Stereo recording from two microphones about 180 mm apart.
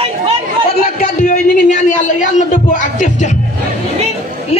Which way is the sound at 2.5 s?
45° left (ahead or behind).